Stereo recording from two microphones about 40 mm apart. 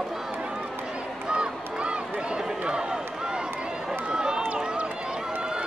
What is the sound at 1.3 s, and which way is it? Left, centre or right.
Run, right.